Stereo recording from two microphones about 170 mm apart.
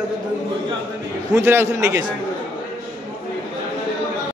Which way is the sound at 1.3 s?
15° right (ahead or behind).